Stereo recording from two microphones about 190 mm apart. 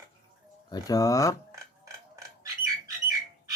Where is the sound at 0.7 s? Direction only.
20° left (ahead or behind).